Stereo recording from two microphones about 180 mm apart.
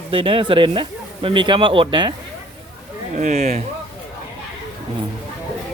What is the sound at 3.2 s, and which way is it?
Speech, 40° right (ahead or behind).